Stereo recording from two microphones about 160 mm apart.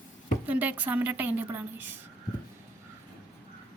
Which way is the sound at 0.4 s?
10° right (ahead or behind).